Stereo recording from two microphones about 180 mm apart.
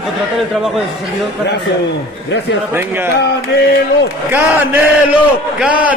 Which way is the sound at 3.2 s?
70° left (ahead or behind).